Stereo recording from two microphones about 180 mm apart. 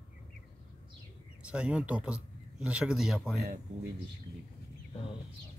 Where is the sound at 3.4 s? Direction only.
60° right (ahead or behind).